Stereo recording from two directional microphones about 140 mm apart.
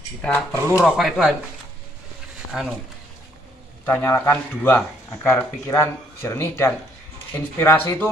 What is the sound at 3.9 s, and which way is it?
Speech, 15° left (ahead or behind).